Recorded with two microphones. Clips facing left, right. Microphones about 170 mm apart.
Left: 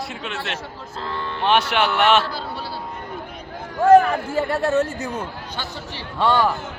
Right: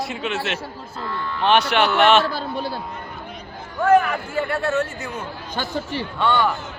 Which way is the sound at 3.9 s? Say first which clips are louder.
Left 4 dB; 35° left (ahead or behind).